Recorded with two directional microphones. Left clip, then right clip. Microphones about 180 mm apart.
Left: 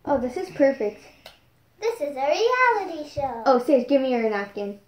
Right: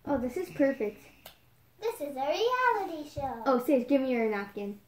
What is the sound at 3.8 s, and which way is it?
Speech, 25° right (ahead or behind).